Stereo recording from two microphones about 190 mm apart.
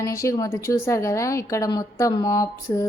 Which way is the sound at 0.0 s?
15° left (ahead or behind).